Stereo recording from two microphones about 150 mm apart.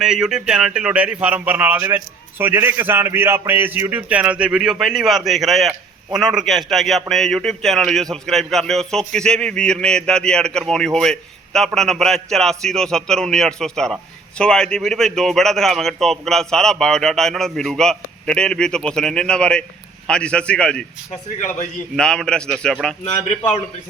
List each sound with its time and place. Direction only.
0.0 s a man's voice: 5° right (ahead or behind)
21.9 s speech: 5° left (ahead or behind)
23.0 s a man's voice: 40° left (ahead or behind)